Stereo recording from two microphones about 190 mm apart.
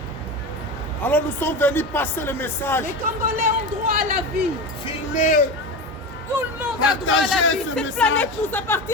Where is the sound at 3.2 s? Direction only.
50° right (ahead or behind).